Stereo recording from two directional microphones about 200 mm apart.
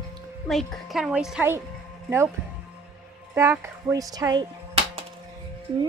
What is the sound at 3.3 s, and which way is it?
A child's voice, 15° right (ahead or behind).